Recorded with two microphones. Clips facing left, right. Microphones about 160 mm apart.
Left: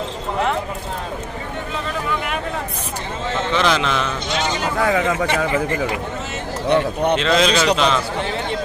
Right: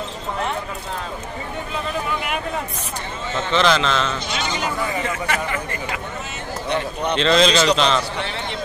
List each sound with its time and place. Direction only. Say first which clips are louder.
3.5 s a man's voice: right 2 dB; 10° left (ahead or behind)
4.7 s speech: left 6 dB; 90° left
6.7 s speech: left 6 dB; 55° left (ahead or behind)
7.2 s a man's voice: right 4 dB; 5° left (ahead or behind)